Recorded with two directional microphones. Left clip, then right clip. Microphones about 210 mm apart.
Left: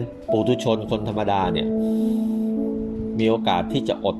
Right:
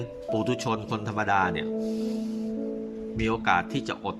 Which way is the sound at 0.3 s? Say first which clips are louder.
Left 7 dB; 40° right (ahead or behind).